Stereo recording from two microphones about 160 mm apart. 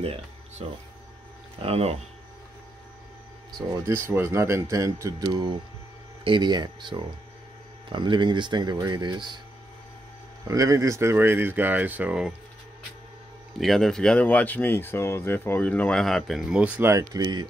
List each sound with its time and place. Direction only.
0.0 s speech: 40° right (ahead or behind)
3.7 s speech: 15° right (ahead or behind)
10.4 s speech: 20° right (ahead or behind)
13.6 s speech: centre (ahead or behind); by 17.5 s 25° right (ahead or behind)